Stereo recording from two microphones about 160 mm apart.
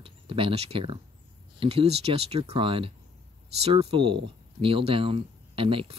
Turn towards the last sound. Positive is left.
turn(degrees=-35)  # may be behind; listen again after turning